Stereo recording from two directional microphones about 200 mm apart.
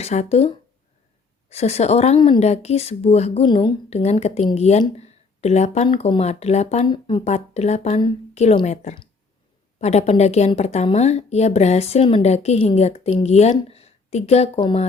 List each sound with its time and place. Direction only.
0.0 s a woman's voice: 35° left (ahead or behind)
6.8 s speech: 20° left (ahead or behind)
7.3 s a woman's voice: 35° left (ahead or behind)